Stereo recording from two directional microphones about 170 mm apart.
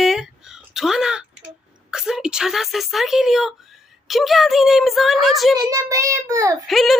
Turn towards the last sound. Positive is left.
turn(degrees=0)  # may be behind; listen again after turning